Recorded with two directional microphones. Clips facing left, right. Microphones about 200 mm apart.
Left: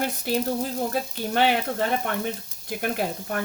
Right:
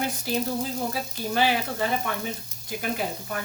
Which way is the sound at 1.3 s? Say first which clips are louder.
Left 2 dB; 60° left (ahead or behind).